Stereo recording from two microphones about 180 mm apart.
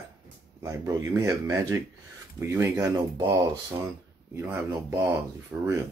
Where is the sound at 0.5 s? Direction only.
15° right (ahead or behind).